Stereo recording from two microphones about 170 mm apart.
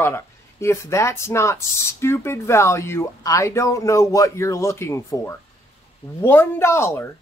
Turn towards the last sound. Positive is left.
turn(degrees=15)  # may be behind; listen again after turning